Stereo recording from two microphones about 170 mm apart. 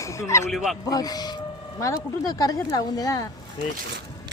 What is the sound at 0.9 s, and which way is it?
Speech, 20° left (ahead or behind).